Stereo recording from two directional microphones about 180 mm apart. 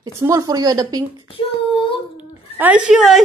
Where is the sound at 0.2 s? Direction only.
20° right (ahead or behind).